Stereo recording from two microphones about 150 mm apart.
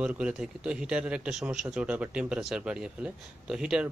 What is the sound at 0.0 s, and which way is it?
A man's voice, 10° right (ahead or behind).